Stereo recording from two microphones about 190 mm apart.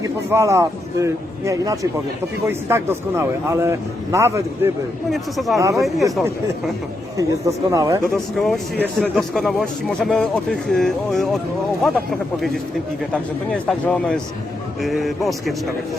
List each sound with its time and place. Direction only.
0.3 s a man's voice: 15° right (ahead or behind)
5.1 s speech: centre (ahead or behind)
5.5 s a man's voice: 15° right (ahead or behind)
7.2 s a man's voice: 15° right (ahead or behind)
8.0 s speech: centre (ahead or behind)
13.5 s speech: 5° left (ahead or behind)